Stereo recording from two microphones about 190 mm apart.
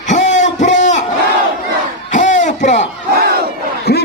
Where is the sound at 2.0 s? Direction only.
40° left (ahead or behind).